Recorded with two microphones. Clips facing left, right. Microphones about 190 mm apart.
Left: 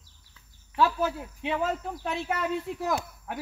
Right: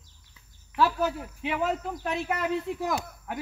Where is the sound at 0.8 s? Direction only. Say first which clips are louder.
Even; 5° right (ahead or behind).